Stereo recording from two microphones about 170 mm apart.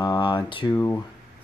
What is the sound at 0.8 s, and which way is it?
Speech, 15° left (ahead or behind).